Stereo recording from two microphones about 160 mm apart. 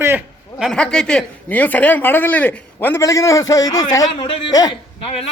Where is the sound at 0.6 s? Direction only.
5° left (ahead or behind).